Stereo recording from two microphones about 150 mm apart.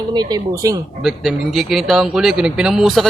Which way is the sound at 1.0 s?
Centre (ahead or behind).